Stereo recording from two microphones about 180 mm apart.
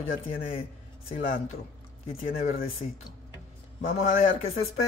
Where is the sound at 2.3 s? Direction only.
35° left (ahead or behind).